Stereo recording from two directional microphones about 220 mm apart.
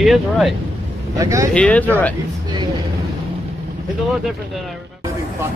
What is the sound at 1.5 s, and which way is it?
Speech, 5° left (ahead or behind).